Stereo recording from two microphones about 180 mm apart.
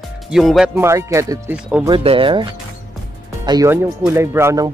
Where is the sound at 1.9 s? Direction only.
30° right (ahead or behind).